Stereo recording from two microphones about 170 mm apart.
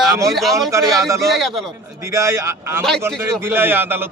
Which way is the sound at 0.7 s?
15° right (ahead or behind).